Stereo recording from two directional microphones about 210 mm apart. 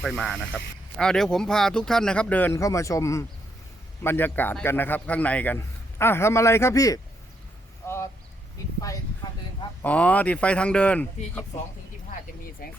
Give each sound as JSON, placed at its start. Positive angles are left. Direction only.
{"t": 0.0, "sound": "a man's voice", "side_deg": 0}
{"t": 7.9, "sound": "vehicle", "side_deg": 10}
{"t": 9.8, "sound": "a man's voice", "side_deg": 5}
{"t": 12.6, "sound": "speech", "side_deg": 45}